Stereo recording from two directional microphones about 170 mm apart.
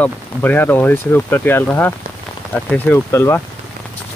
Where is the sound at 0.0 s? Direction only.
10° left (ahead or behind).